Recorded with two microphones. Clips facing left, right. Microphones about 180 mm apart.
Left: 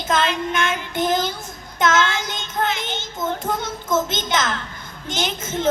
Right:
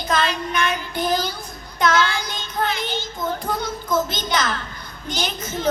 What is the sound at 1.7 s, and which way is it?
Child singing, 20° left (ahead or behind).